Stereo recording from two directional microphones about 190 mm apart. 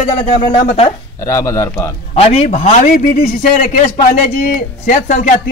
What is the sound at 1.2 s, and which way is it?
Speech, 15° left (ahead or behind).